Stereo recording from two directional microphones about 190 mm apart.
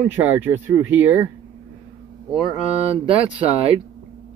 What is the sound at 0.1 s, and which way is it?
Speech, 15° right (ahead or behind).